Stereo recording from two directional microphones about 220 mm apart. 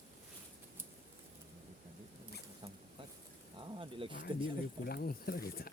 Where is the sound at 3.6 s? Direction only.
25° right (ahead or behind).